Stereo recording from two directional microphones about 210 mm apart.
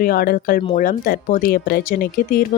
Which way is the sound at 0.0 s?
45° left (ahead or behind).